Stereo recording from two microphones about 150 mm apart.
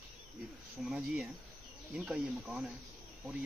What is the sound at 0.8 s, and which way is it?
Speech, centre (ahead or behind).